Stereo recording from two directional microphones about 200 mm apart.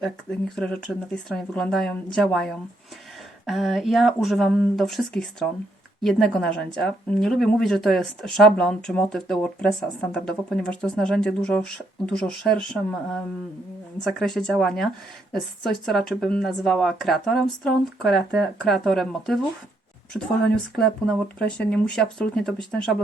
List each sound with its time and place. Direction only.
0.0 s a woman's voice: 5° left (ahead or behind)